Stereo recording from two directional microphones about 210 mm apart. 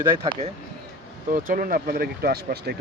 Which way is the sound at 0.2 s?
25° right (ahead or behind).